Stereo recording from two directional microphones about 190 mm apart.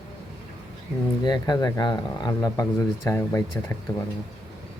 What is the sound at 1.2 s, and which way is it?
Speech, 20° left (ahead or behind).